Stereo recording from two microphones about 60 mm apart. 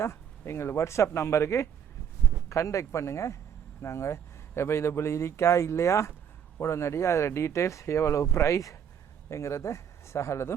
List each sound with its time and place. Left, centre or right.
0.0 s a man's voice: left